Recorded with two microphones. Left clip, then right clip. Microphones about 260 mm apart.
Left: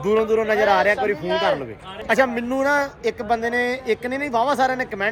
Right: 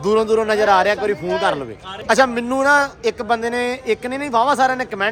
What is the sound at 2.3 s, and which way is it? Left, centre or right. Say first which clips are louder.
Speech: right 5 dB; centre.